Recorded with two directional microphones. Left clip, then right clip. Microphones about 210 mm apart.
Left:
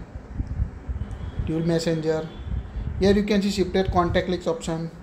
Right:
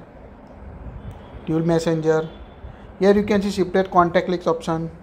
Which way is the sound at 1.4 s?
10° right (ahead or behind).